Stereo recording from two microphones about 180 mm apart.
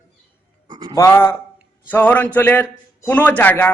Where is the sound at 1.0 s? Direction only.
15° left (ahead or behind).